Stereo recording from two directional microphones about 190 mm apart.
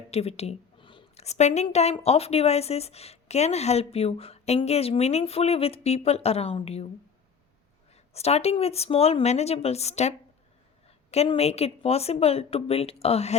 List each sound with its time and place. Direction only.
0.1 s a woman's voice: 35° left (ahead or behind)
8.1 s a woman's voice: 35° left (ahead or behind)